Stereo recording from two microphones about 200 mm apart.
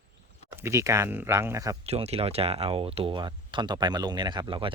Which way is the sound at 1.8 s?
30° right (ahead or behind).